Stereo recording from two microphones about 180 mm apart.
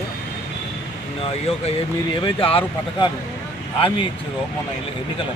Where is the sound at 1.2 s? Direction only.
35° left (ahead or behind).